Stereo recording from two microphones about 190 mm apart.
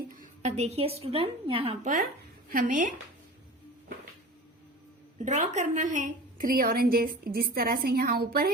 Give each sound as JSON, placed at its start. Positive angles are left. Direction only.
{"t": 0.2, "sound": "a woman's voice", "side_deg": -35}
{"t": 2.5, "sound": "a woman's voice", "side_deg": -45}
{"t": 5.2, "sound": "a woman's voice", "side_deg": -40}